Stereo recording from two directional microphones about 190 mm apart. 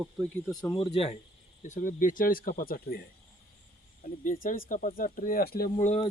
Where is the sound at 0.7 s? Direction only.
30° left (ahead or behind).